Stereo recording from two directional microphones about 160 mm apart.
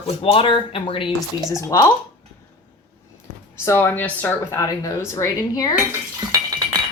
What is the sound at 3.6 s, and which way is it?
Speech, 15° left (ahead or behind).